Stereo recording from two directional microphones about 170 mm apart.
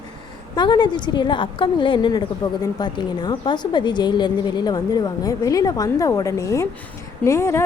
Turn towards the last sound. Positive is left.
turn(degrees=15)  # may be behind; listen again after turning